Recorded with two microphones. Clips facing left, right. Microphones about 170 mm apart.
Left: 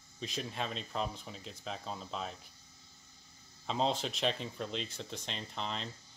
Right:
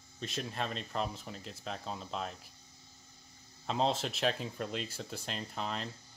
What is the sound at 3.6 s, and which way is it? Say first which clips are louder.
Speech: right 1 dB; centre (ahead or behind).